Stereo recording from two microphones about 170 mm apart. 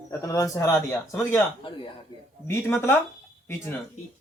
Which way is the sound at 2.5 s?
15° left (ahead or behind).